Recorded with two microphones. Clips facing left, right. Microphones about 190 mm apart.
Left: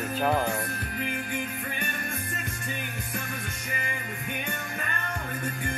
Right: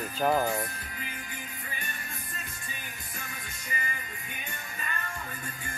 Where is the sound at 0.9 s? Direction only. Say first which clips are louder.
Left 10 dB; 60° left (ahead or behind).